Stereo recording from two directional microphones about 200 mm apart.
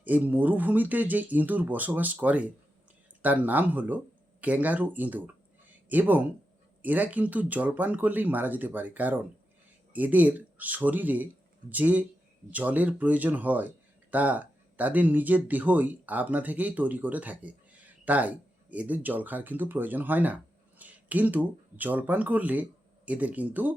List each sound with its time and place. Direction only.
0.0 s speech: 10° right (ahead or behind)